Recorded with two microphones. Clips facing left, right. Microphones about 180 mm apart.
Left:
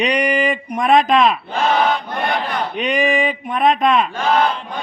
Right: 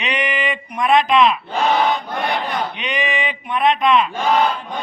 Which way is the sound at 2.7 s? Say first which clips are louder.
Left 6 dB; 45° left (ahead or behind).